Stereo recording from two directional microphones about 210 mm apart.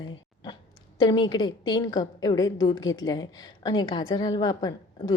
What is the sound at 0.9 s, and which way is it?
A woman's voice, 20° left (ahead or behind).